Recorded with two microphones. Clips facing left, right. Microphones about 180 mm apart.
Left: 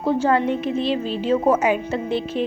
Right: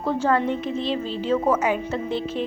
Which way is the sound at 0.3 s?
15° left (ahead or behind).